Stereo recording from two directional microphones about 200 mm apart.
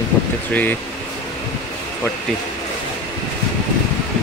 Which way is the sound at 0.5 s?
5° left (ahead or behind).